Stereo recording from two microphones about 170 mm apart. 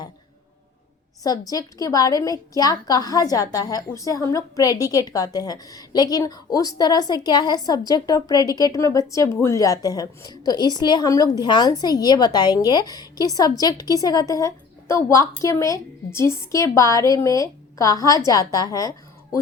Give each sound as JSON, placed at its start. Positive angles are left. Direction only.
{"t": 1.2, "sound": "a woman's voice", "side_deg": 20}